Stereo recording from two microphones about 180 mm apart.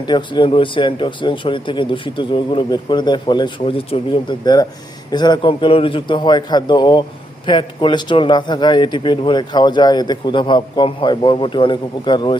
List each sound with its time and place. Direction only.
0.1 s a man's voice: 25° left (ahead or behind)